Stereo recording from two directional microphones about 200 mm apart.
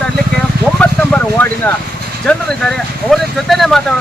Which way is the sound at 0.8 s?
10° left (ahead or behind).